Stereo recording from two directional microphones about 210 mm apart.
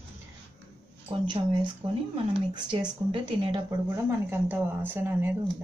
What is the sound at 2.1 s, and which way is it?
Speech, 20° right (ahead or behind).